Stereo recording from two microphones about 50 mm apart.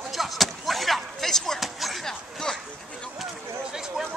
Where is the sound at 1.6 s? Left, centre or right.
Centre.